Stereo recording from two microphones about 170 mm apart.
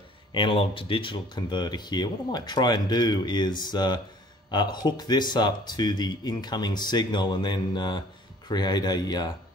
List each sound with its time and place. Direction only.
0.3 s speech: 30° left (ahead or behind)